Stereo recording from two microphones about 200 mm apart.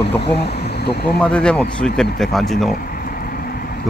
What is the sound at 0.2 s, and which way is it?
Speech, 55° left (ahead or behind).